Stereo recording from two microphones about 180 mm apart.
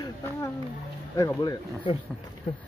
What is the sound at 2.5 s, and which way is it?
Speech, 30° left (ahead or behind).